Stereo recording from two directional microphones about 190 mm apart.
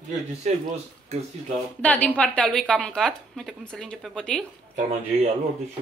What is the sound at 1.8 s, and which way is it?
A woman's voice, 10° left (ahead or behind).